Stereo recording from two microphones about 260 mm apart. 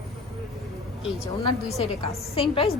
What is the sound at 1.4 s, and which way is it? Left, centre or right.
A woman's voice, left.